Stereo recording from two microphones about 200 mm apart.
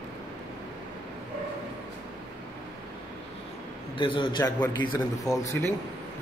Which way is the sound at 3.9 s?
25° left (ahead or behind).